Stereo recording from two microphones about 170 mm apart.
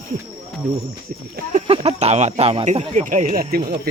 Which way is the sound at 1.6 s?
35° right (ahead or behind).